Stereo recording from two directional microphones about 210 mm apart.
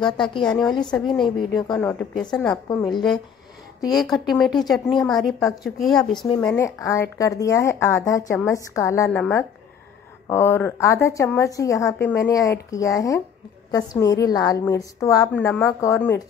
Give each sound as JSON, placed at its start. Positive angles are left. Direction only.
{"t": 0.0, "sound": "a woman's voice", "side_deg": 20}
{"t": 3.9, "sound": "a woman's voice", "side_deg": 0}
{"t": 6.4, "sound": "speech", "side_deg": 15}
{"t": 10.2, "sound": "speech", "side_deg": 10}